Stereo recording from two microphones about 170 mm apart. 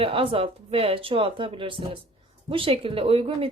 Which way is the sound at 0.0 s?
35° right (ahead or behind).